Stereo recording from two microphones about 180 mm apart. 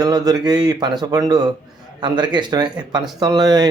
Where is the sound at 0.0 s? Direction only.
20° right (ahead or behind).